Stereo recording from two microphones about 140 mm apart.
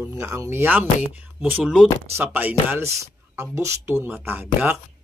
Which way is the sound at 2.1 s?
15° right (ahead or behind).